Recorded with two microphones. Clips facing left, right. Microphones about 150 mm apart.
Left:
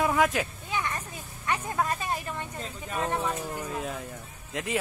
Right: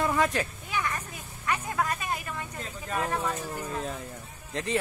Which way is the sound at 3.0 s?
20° left (ahead or behind).